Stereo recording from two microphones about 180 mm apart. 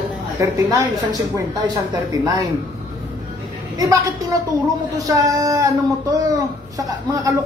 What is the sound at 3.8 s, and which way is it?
Speech, 20° right (ahead or behind).